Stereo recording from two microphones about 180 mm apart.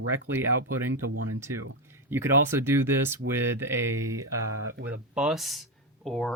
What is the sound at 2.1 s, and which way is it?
Speech, 15° right (ahead or behind).